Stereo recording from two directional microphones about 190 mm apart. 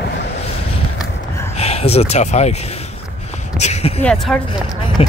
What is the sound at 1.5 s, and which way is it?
Speech, 35° left (ahead or behind).